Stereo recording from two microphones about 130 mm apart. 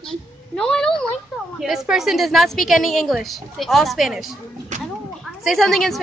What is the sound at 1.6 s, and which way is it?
A woman's voice, 5° right (ahead or behind).